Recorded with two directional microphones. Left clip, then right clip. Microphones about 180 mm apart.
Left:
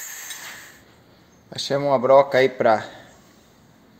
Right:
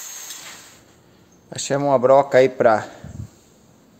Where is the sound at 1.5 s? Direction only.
35° right (ahead or behind).